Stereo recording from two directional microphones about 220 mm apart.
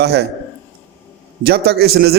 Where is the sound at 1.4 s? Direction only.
45° right (ahead or behind).